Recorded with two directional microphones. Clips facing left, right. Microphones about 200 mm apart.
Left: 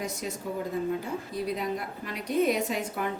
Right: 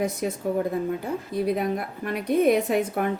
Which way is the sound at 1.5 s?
55° right (ahead or behind).